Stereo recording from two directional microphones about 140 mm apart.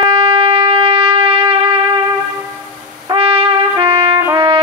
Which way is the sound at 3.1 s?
40° right (ahead or behind).